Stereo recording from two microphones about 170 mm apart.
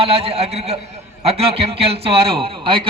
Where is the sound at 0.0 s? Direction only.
35° right (ahead or behind).